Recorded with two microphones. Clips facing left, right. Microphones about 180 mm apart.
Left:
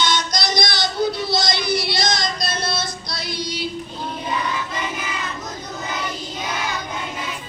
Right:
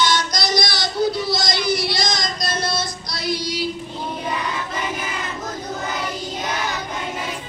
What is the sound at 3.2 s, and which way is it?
Child singing, 25° left (ahead or behind).